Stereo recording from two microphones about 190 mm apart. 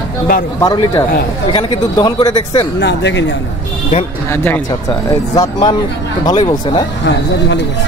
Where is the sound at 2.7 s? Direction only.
65° left (ahead or behind).